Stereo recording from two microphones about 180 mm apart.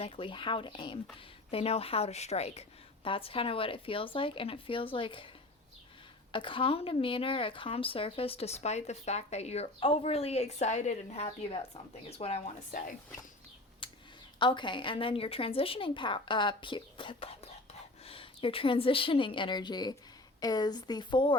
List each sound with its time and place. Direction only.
0.0 s a woman's voice: 30° left (ahead or behind)
6.3 s a woman's voice: 30° left (ahead or behind)
13.8 s a sound: 30° left (ahead or behind)
14.3 s a woman's voice: 25° left (ahead or behind)